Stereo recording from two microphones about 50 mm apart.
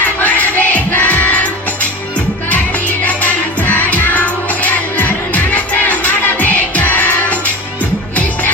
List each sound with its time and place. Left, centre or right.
0.2 s music: left
3.1 s music: left